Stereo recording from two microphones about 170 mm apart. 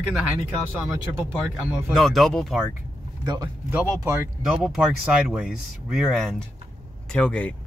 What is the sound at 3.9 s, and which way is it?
A man's voice, 15° right (ahead or behind).